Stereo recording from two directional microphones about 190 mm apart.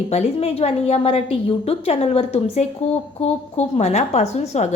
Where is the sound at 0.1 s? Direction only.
35° left (ahead or behind).